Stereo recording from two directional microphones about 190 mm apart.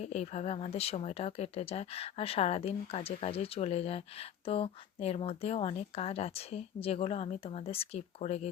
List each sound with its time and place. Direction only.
0.0 s speech: 35° left (ahead or behind)